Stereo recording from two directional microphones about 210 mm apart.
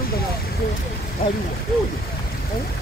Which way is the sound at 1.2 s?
40° left (ahead or behind).